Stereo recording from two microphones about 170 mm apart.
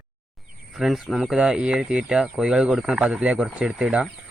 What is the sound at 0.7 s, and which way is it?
Speech, centre (ahead or behind).